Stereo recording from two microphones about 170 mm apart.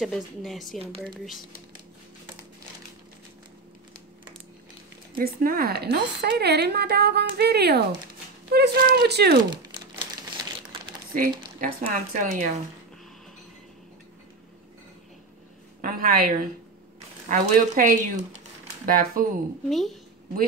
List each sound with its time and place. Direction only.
0.0 s speech: centre (ahead or behind)
5.1 s speech: 60° right (ahead or behind)
9.5 s crumpling: 25° right (ahead or behind)
11.1 s speech: 55° right (ahead or behind)
15.8 s a woman's voice: 60° right (ahead or behind)
19.7 s speech: centre (ahead or behind)